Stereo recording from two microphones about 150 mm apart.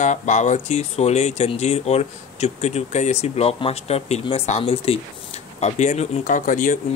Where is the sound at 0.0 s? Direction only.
55° left (ahead or behind).